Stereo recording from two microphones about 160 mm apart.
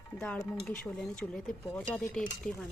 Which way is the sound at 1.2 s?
10° left (ahead or behind).